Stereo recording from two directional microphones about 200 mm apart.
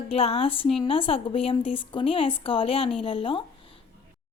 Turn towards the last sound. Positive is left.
turn(degrees=25)  # may be behind; listen again after turning